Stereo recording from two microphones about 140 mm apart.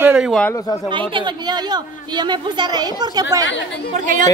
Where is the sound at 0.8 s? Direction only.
35° right (ahead or behind).